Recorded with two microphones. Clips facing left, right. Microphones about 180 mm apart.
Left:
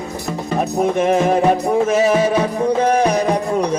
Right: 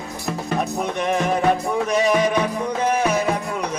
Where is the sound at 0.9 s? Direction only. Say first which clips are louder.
Left 5 dB; 40° left (ahead or behind).